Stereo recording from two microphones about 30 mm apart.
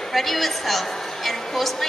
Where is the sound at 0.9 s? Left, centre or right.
Centre.